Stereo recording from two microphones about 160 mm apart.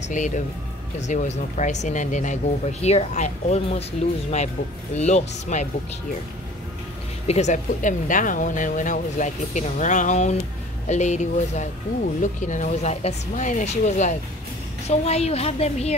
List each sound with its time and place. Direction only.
0.2 s a woman's voice: 50° left (ahead or behind)
4.9 s speech: 45° left (ahead or behind)
7.2 s a woman's voice: 45° left (ahead or behind)